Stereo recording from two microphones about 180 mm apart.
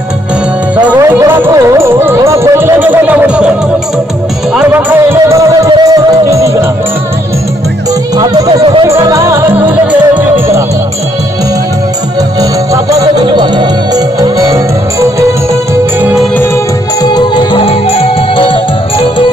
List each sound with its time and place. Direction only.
0.7 s music: 10° right (ahead or behind)
4.6 s music: 10° right (ahead or behind)
8.2 s music: 20° right (ahead or behind)
8.8 s music: 15° right (ahead or behind)
12.4 s music: 20° right (ahead or behind)
17.0 s music: 25° left (ahead or behind)